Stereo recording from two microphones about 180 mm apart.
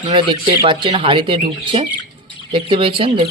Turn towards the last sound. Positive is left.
turn(degrees=-30)  # may be behind; listen again after turning